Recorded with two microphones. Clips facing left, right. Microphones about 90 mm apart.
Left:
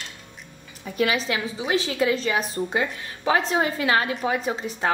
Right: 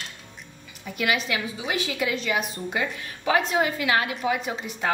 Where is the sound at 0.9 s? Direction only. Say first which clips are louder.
Left 2 dB; 35° left (ahead or behind).